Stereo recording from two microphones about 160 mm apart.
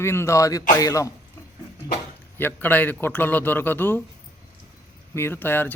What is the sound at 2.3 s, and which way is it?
A man's voice, 10° left (ahead or behind).